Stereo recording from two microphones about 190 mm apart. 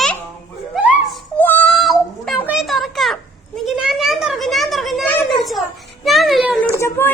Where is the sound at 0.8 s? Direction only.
5° right (ahead or behind).